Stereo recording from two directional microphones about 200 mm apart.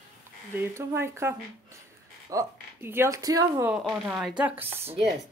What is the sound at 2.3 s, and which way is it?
Speech, 10° right (ahead or behind).